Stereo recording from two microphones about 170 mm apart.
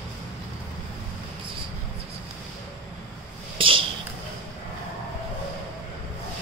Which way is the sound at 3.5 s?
30° right (ahead or behind).